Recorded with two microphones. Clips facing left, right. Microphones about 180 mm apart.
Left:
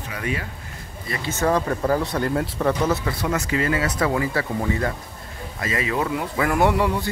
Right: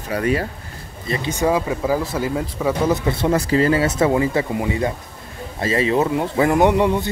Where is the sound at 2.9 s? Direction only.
25° right (ahead or behind).